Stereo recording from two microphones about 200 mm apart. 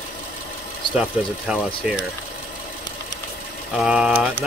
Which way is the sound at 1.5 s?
5° right (ahead or behind).